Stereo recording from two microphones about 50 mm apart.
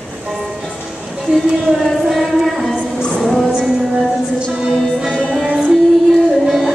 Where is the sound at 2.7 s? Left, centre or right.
Centre.